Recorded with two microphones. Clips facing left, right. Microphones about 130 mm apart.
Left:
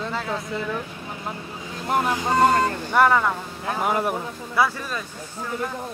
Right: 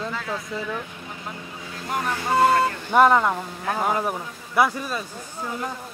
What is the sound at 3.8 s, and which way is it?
Speech, 5° left (ahead or behind).